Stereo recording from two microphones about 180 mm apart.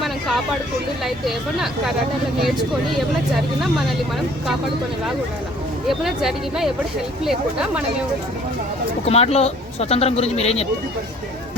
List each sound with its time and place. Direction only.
0.0 s hubbub: centre (ahead or behind)
1.0 s speech: centre (ahead or behind)
5.9 s speech: centre (ahead or behind)
9.0 s speech: 35° left (ahead or behind)